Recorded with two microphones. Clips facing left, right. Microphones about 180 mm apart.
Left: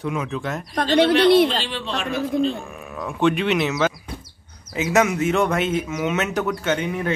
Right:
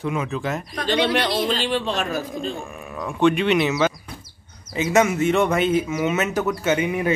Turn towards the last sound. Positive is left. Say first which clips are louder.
# right 2 dB
turn(degrees=-10)  # may be behind; listen again after turning